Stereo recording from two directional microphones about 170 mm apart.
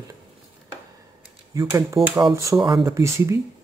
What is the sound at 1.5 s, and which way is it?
Speech, 20° right (ahead or behind).